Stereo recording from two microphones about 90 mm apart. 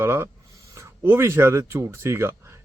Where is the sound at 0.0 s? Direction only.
30° right (ahead or behind).